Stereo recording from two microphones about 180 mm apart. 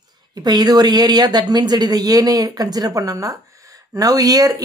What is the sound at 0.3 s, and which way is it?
Speech, 20° right (ahead or behind).